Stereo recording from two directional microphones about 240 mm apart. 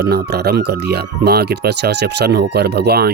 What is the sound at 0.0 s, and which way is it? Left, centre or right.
Speech, right.